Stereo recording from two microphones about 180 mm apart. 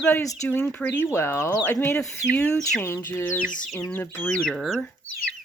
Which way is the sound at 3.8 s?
10° left (ahead or behind).